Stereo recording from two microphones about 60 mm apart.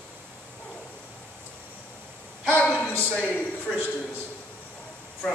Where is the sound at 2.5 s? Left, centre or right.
Left.